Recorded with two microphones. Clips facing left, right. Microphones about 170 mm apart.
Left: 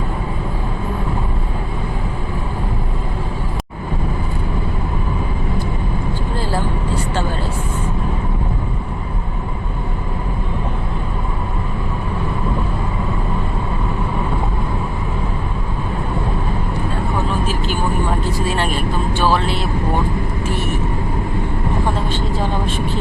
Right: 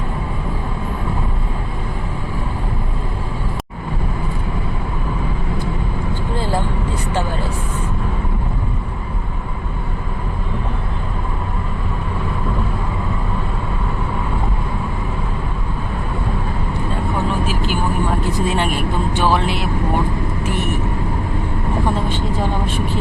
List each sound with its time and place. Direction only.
18.3 s vehicle: 20° right (ahead or behind)